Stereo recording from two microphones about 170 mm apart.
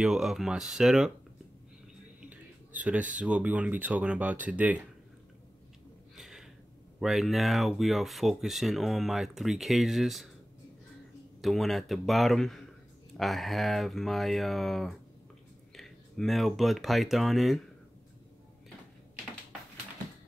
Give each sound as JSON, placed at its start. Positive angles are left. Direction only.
{"t": 0.0, "sound": "speech", "side_deg": 0}
{"t": 2.2, "sound": "speech", "side_deg": -10}
{"t": 6.1, "sound": "a sound", "side_deg": -5}
{"t": 7.0, "sound": "speech", "side_deg": 0}
{"t": 11.4, "sound": "speech", "side_deg": 0}